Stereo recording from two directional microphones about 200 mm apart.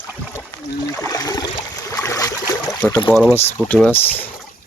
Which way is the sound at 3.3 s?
5° left (ahead or behind).